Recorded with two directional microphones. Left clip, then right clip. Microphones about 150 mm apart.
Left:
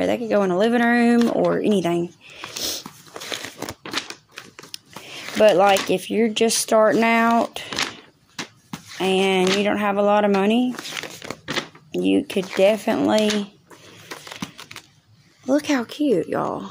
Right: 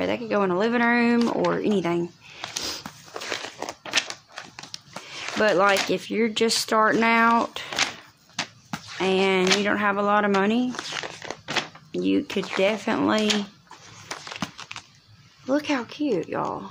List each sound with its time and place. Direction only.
0.0 s speech: 25° left (ahead or behind)
4.6 s speech: 25° left (ahead or behind)
8.8 s speech: 20° left (ahead or behind)
10.7 s speech: 30° left (ahead or behind)
11.9 s speech: 15° left (ahead or behind)
15.4 s speech: 35° left (ahead or behind)